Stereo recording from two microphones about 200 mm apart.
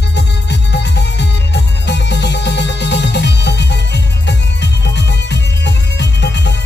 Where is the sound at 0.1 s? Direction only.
60° left (ahead or behind).